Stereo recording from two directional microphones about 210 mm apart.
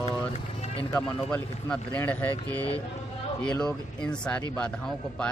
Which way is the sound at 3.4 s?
5° left (ahead or behind).